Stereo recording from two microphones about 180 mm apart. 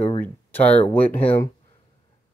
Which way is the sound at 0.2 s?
10° left (ahead or behind).